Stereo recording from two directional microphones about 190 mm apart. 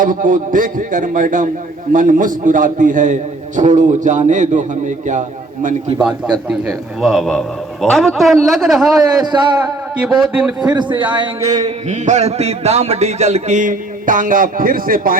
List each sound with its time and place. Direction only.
0.0 s a man's voice: 45° right (ahead or behind)
6.5 s a man's voice: centre (ahead or behind)
10.7 s a sound: 25° right (ahead or behind)
11.9 s a man's voice: 40° right (ahead or behind)